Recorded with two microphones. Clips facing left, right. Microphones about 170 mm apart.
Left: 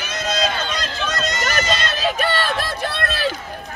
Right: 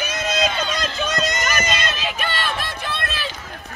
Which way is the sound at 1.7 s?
35° left (ahead or behind).